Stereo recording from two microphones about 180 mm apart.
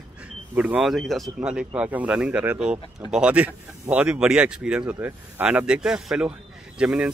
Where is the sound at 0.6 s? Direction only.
10° right (ahead or behind).